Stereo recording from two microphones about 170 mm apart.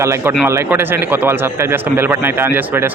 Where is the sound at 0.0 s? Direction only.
15° right (ahead or behind).